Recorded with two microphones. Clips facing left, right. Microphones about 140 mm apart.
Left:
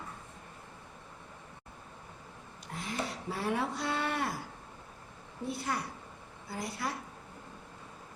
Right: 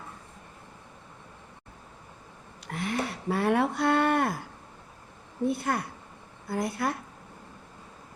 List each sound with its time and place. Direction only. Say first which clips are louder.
2.6 s speech: right 6 dB; 65° right (ahead or behind)
5.5 s a woman's voice: right 6 dB; 55° right (ahead or behind)